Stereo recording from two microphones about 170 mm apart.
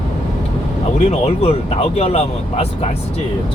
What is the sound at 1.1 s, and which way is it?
Speech, 35° left (ahead or behind).